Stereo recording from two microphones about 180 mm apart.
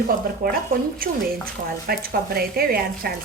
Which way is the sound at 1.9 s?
55° right (ahead or behind).